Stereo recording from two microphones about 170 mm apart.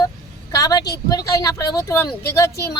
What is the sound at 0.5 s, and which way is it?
Speech, 20° left (ahead or behind).